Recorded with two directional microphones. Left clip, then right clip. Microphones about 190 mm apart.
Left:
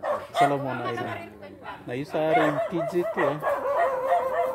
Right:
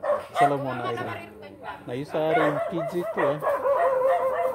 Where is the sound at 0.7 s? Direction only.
30° right (ahead or behind).